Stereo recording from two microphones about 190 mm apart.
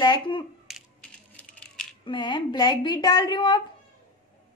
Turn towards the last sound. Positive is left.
turn(degrees=25)  # may be behind; listen again after turning